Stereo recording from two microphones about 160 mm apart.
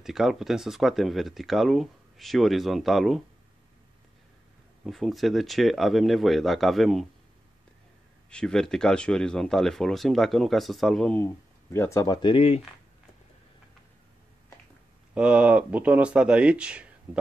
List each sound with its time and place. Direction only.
0.0 s speech: centre (ahead or behind)
4.8 s speech: centre (ahead or behind)
8.3 s speech: 5° left (ahead or behind)
11.7 s speech: 15° left (ahead or behind); by 12.6 s 35° left (ahead or behind)
15.1 s speech: 5° right (ahead or behind)